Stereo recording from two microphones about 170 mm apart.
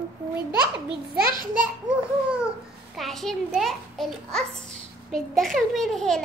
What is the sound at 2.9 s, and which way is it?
A child's voice, centre (ahead or behind).